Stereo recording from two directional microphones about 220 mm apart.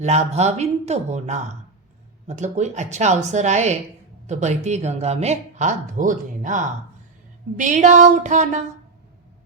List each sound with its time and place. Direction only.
0.0 s speech: 30° right (ahead or behind)